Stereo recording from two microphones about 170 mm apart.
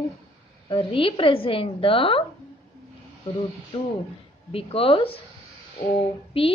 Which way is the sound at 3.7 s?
35° left (ahead or behind).